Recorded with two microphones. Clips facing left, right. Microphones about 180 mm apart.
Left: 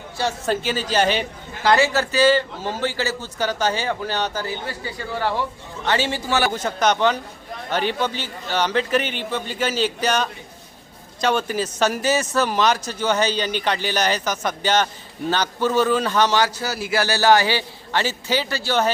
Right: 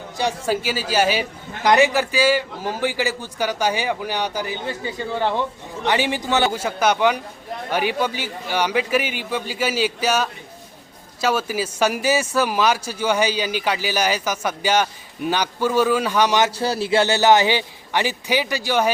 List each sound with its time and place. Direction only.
0.2 s a man's voice: 10° right (ahead or behind)
1.6 s a man's voice: 15° right (ahead or behind)
6.5 s a man's voice: 10° right (ahead or behind)
16.6 s a man's voice: 30° right (ahead or behind); by 18.9 s 10° right (ahead or behind)